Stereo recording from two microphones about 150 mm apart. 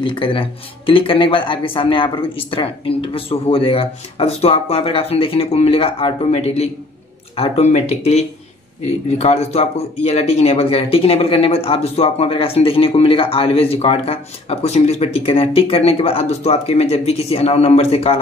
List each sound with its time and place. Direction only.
0.0 s speech: 35° left (ahead or behind)